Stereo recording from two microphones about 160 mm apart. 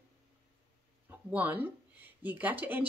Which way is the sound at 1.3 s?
10° right (ahead or behind).